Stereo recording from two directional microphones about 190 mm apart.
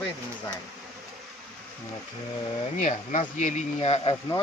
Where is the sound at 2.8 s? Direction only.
40° left (ahead or behind).